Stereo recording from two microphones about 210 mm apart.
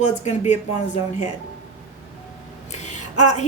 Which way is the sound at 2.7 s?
35° left (ahead or behind).